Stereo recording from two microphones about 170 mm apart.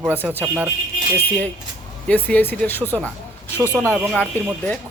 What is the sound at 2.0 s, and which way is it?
Speech, 10° left (ahead or behind).